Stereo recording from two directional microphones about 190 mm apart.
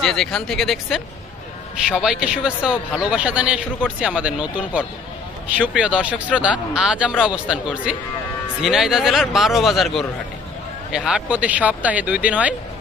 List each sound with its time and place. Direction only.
0.0 s speech: centre (ahead or behind)